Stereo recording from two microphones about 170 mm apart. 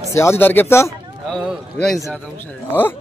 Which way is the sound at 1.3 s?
Centre (ahead or behind).